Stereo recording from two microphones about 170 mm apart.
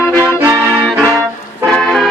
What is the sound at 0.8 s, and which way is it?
Music, centre (ahead or behind).